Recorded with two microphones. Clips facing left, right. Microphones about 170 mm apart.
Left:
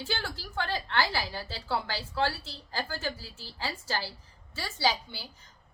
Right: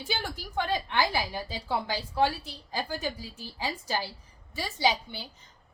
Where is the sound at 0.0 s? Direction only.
15° right (ahead or behind).